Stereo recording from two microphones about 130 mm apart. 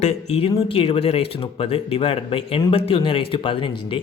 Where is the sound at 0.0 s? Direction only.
55° left (ahead or behind).